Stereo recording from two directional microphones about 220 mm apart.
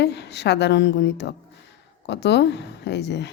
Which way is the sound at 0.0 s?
50° left (ahead or behind).